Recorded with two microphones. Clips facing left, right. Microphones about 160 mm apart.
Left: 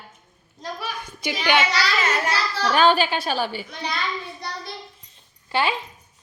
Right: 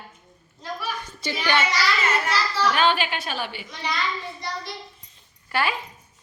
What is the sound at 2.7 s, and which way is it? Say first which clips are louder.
A woman's voice: left 5 dB; 40° left (ahead or behind).